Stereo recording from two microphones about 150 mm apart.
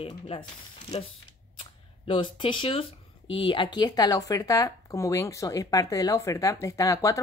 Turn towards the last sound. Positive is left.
turn(degrees=20)  # may be behind; listen again after turning